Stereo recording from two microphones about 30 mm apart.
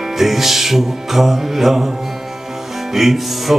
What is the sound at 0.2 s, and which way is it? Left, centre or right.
Music, centre.